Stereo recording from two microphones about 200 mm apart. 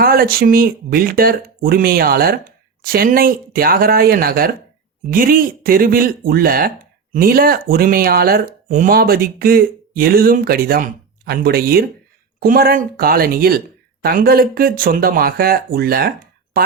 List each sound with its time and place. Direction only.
0.0 s speech: 50° right (ahead or behind)